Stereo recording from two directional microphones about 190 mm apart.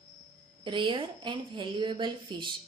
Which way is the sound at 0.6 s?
25° right (ahead or behind).